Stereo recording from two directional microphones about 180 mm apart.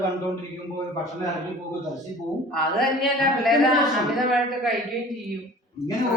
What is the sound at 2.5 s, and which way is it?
A man's voice, centre (ahead or behind).